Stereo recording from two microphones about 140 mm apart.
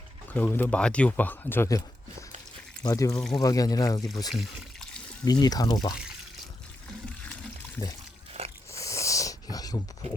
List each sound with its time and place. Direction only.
0.3 s speech: 15° left (ahead or behind)
2.8 s speech: 25° left (ahead or behind)
4.3 s pour: centre (ahead or behind)
5.2 s speech: 25° left (ahead or behind)
8.4 s a sound: 45° right (ahead or behind)
8.7 s a sound: 20° left (ahead or behind)